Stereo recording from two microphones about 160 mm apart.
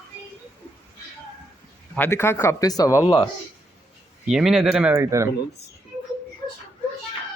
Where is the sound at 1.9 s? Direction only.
15° left (ahead or behind).